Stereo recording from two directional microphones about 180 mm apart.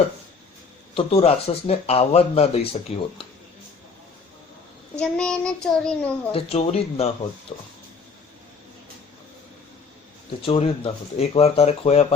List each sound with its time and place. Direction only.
0.9 s speech: 35° left (ahead or behind)
4.9 s a child's voice: 5° left (ahead or behind)
6.3 s speech: 35° left (ahead or behind)
10.4 s speech: 30° left (ahead or behind)